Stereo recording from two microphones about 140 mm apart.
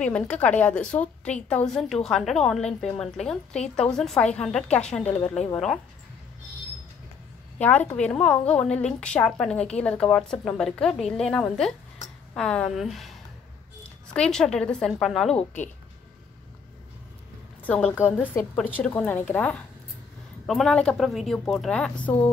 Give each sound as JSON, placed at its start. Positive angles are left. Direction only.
{"t": 0.0, "sound": "a woman's voice", "side_deg": 10}
{"t": 7.6, "sound": "a woman's voice", "side_deg": 10}
{"t": 14.1, "sound": "a woman's voice", "side_deg": 5}
{"t": 15.3, "sound": "speech", "side_deg": 60}
{"t": 17.6, "sound": "a woman's voice", "side_deg": 10}